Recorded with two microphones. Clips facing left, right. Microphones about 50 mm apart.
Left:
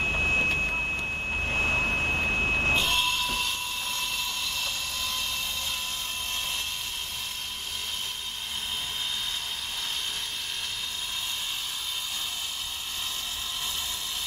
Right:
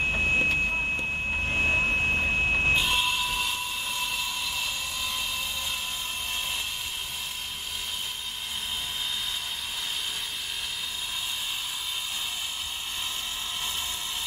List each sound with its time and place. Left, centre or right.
0.0 s vehicle: centre